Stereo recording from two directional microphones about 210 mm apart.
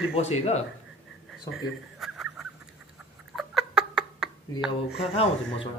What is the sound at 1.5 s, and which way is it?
Chuckle, centre (ahead or behind).